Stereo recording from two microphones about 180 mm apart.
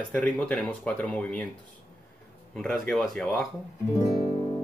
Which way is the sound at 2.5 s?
Centre (ahead or behind).